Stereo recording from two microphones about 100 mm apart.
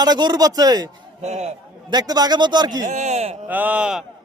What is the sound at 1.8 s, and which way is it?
A man's voice, 40° right (ahead or behind).